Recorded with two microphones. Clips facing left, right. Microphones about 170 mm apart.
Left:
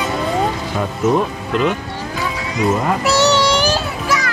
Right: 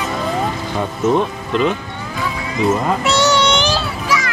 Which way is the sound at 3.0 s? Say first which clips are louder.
Left 1 dB; 35° left (ahead or behind).